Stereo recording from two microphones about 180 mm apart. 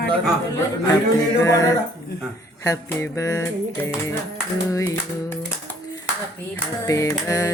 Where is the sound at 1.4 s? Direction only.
20° left (ahead or behind).